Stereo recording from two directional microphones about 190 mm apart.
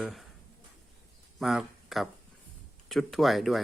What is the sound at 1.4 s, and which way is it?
Speech, centre (ahead or behind).